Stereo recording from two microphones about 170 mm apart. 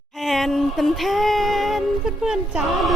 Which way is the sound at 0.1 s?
Centre (ahead or behind).